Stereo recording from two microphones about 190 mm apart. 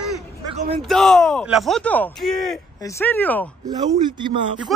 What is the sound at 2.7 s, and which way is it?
Speech, 15° left (ahead or behind).